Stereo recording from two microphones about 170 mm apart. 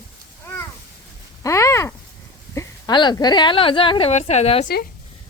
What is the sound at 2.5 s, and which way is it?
A woman's voice, 25° left (ahead or behind).